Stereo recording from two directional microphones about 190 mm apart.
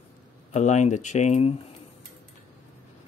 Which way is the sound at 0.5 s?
40° left (ahead or behind).